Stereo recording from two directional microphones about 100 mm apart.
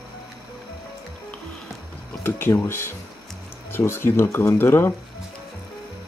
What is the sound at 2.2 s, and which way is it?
Speech, 20° left (ahead or behind).